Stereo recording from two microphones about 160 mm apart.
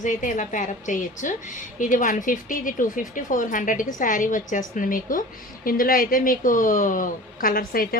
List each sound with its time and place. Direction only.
0.0 s a woman's voice: 55° left (ahead or behind)